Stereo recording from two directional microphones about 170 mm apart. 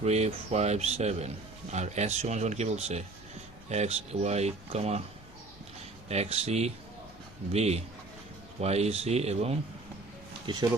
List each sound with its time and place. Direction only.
0.0 s speech: 40° right (ahead or behind)
6.1 s speech: 40° right (ahead or behind)
10.4 s speech: 25° right (ahead or behind)